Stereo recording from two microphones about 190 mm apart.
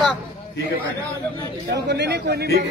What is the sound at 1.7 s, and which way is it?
Speech, 60° right (ahead or behind).